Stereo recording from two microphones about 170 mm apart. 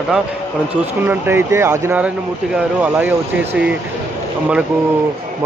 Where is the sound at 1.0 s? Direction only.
15° right (ahead or behind).